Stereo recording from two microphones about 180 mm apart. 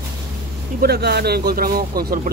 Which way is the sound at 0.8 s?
60° right (ahead or behind).